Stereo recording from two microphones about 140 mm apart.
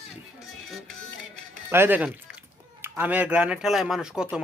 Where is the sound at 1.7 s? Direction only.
15° right (ahead or behind).